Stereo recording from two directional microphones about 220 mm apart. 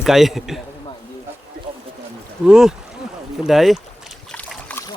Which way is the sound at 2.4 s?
5° right (ahead or behind).